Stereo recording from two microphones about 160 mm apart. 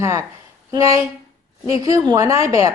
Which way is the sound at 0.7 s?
20° right (ahead or behind).